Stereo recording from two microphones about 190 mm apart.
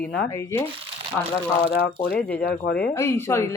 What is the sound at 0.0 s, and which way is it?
Speech, 5° left (ahead or behind).